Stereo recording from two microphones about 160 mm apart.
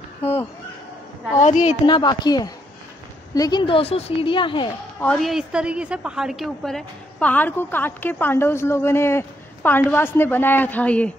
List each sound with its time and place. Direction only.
1.4 s a woman's voice: 45° left (ahead or behind)
1.9 s a woman's voice: 30° left (ahead or behind)
5.0 s a woman's voice: centre (ahead or behind)